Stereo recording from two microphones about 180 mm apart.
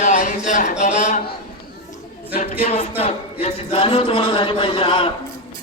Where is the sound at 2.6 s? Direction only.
35° left (ahead or behind).